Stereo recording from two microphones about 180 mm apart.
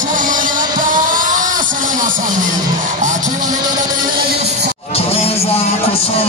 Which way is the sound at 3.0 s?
45° right (ahead or behind).